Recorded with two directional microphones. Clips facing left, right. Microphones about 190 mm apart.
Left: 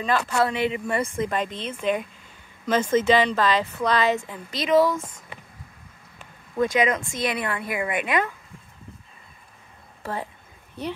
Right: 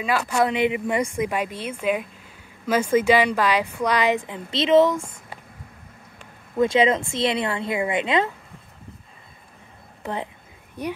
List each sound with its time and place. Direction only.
0.0 s a woman's voice: 10° right (ahead or behind)
6.5 s speech: 25° right (ahead or behind)
10.0 s a woman's voice: 20° right (ahead or behind)